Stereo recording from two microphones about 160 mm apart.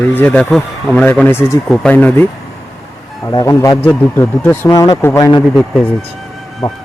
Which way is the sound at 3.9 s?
15° left (ahead or behind).